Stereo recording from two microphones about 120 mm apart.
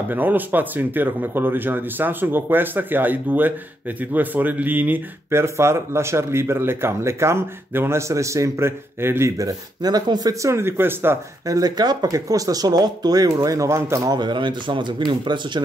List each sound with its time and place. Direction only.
0.1 s speech: 15° right (ahead or behind)
11.4 s speech: 30° right (ahead or behind)
14.1 s speech: 40° right (ahead or behind)